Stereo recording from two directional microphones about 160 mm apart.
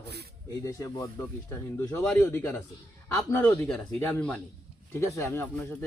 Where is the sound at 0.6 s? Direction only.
20° left (ahead or behind).